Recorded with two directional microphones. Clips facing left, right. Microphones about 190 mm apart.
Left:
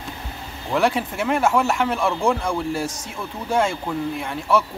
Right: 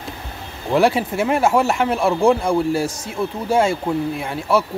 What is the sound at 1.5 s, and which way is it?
Speech, 30° right (ahead or behind).